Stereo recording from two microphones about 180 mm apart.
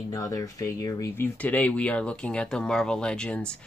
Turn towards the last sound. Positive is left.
turn(degrees=5)  # may be behind; listen again after turning